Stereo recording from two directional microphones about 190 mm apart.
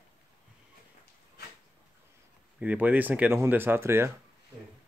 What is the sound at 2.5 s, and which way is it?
Speech, 10° right (ahead or behind).